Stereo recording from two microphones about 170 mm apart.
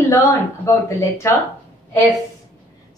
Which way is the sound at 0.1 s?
15° left (ahead or behind).